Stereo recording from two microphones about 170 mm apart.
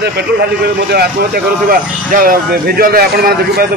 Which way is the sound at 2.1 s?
55° right (ahead or behind).